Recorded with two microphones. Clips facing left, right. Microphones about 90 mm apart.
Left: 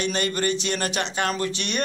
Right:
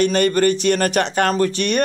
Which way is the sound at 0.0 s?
50° right (ahead or behind).